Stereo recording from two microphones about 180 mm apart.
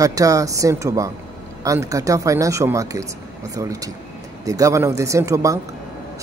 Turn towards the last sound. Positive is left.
turn(degrees=-20)  # may be behind; listen again after turning